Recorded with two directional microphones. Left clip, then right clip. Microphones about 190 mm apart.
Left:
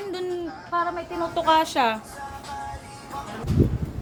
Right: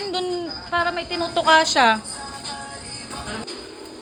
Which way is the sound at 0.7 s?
15° right (ahead or behind).